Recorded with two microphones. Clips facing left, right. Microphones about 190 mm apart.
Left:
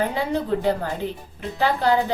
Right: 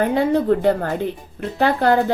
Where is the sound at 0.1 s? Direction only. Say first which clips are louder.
Right 7 dB; 55° right (ahead or behind).